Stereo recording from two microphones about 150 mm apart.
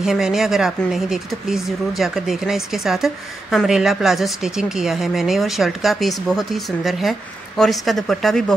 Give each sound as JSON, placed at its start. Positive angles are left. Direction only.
{"t": 0.0, "sound": "speech", "side_deg": -5}